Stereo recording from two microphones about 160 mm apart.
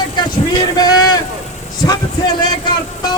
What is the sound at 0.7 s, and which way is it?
Speech, 25° left (ahead or behind).